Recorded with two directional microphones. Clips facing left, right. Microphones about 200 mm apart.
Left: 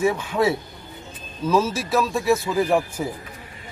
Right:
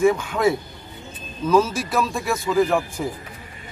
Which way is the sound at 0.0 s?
5° left (ahead or behind).